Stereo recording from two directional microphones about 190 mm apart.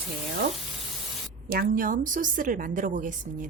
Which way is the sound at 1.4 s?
50° right (ahead or behind).